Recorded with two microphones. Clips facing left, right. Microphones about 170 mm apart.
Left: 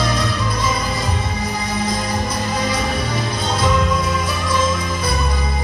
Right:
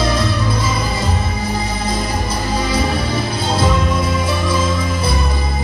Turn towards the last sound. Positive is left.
turn(degrees=-30)  # may be behind; listen again after turning